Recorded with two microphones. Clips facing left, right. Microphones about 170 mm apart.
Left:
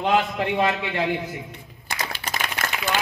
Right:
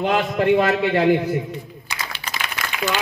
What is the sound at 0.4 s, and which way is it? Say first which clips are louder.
Speech: right 6 dB; 45° right (ahead or behind).